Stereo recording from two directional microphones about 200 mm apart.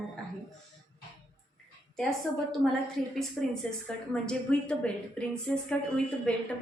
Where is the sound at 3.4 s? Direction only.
5° left (ahead or behind).